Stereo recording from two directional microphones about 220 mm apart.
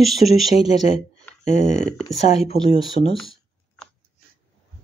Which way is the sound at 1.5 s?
30° left (ahead or behind).